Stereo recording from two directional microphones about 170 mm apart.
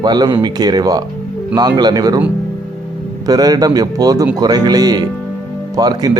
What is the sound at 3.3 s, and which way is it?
Speech, 20° right (ahead or behind).